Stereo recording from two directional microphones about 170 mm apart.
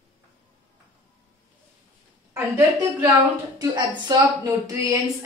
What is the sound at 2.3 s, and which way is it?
A woman's voice, 15° right (ahead or behind).